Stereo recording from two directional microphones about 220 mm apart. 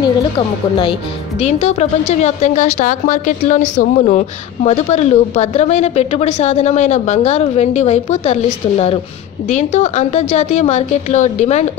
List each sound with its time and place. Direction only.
1.4 s a woman's voice: 30° left (ahead or behind)